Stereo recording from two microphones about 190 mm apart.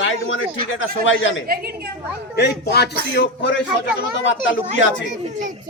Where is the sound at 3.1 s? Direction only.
70° left (ahead or behind).